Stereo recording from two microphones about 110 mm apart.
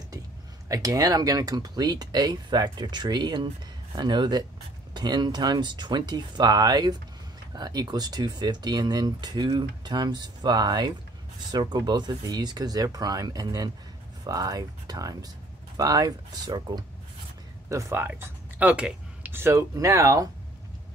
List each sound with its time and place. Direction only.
0.7 s speech: 35° right (ahead or behind)
17.6 s speech: 30° right (ahead or behind); by 19.3 s 10° right (ahead or behind)
19.3 s speech: 25° right (ahead or behind)